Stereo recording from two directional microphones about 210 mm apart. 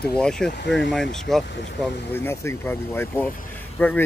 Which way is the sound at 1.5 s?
55° left (ahead or behind).